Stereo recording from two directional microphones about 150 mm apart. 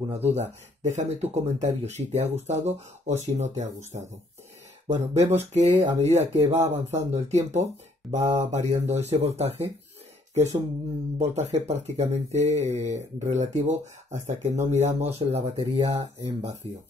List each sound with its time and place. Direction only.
0.1 s speech: 45° right (ahead or behind)